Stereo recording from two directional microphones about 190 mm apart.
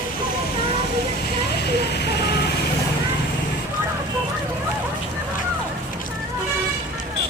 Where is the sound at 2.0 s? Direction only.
55° left (ahead or behind).